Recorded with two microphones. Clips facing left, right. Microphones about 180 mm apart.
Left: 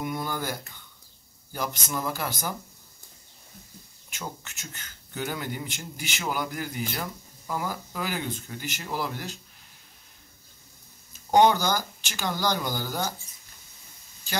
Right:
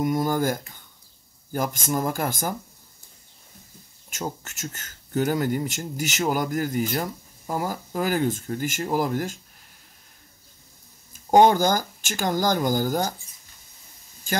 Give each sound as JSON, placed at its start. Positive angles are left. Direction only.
{"t": 0.0, "sound": "speech", "side_deg": -40}
{"t": 4.1, "sound": "speech", "side_deg": -45}
{"t": 11.3, "sound": "speech", "side_deg": -45}